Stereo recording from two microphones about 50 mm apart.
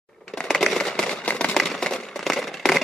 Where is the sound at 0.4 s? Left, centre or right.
Centre.